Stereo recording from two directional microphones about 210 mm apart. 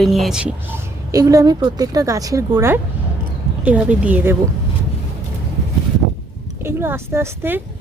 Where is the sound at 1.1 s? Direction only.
15° right (ahead or behind).